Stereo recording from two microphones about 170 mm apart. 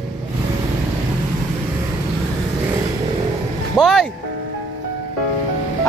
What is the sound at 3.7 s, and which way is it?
Speech, centre (ahead or behind).